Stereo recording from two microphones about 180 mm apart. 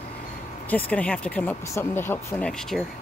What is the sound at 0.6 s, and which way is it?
Speech, 10° left (ahead or behind).